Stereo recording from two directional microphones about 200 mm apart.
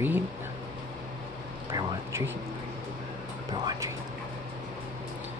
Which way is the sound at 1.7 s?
10° right (ahead or behind).